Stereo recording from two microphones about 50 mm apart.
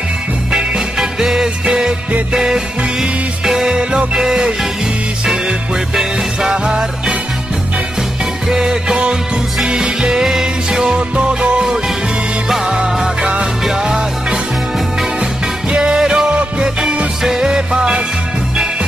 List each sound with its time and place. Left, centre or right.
0.5 s music: centre
6.5 s music: centre
8.5 s music: centre
15.7 s music: centre